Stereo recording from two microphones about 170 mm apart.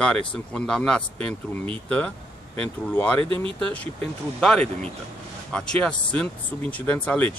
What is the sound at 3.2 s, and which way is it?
Speech, 30° right (ahead or behind).